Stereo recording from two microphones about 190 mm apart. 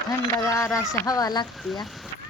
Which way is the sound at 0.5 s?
15° left (ahead or behind).